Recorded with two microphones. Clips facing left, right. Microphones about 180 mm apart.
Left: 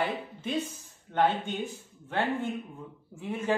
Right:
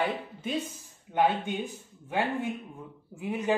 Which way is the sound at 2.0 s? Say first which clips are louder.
Even; 10° right (ahead or behind).